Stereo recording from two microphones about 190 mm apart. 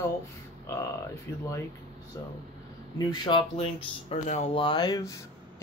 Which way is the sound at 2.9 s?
20° left (ahead or behind).